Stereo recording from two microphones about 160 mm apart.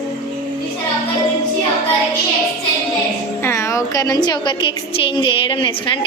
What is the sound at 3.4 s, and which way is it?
A woman's voice, 15° left (ahead or behind).